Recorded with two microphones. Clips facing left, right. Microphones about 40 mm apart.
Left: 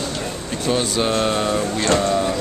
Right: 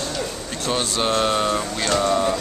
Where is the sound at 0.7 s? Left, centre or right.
Centre.